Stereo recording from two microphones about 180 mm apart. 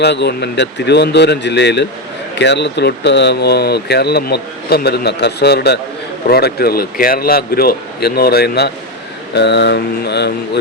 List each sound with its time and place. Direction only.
0.0 s speech: 70° left (ahead or behind)